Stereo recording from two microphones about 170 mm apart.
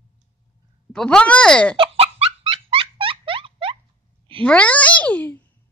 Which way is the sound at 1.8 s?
35° right (ahead or behind).